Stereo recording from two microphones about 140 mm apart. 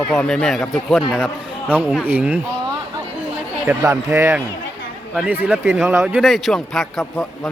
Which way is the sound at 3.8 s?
20° right (ahead or behind).